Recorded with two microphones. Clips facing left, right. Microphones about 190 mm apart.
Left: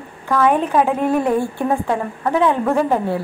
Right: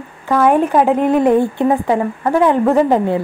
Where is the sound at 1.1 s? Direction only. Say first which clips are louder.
Right 5 dB; 20° right (ahead or behind).